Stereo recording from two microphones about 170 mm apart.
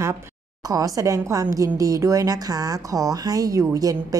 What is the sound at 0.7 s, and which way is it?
A woman's voice, 20° right (ahead or behind).